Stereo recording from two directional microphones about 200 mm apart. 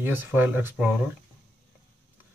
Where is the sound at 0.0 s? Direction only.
10° right (ahead or behind).